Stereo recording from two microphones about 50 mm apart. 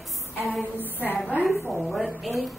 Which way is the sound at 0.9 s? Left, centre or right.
Left.